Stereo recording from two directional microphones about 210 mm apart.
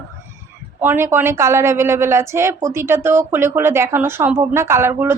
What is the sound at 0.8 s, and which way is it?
Speech, 10° right (ahead or behind).